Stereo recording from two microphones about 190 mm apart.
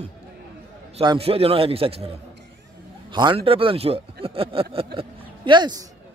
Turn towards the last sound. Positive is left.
turn(degrees=-25)  # may be behind; listen again after turning